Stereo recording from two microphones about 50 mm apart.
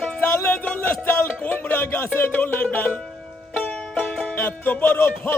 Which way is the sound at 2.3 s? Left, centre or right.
Left.